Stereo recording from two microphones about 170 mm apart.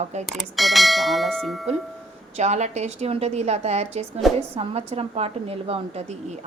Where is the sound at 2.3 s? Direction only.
40° right (ahead or behind).